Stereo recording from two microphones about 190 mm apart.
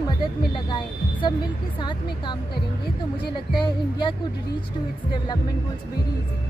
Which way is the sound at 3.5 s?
25° left (ahead or behind).